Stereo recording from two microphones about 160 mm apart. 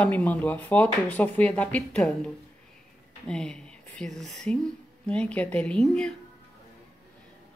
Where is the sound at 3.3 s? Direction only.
5° left (ahead or behind).